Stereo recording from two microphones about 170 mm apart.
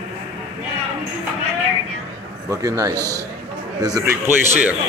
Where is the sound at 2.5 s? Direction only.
20° right (ahead or behind).